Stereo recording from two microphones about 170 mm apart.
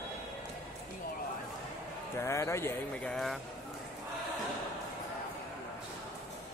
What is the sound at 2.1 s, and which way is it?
Speech, 15° left (ahead or behind).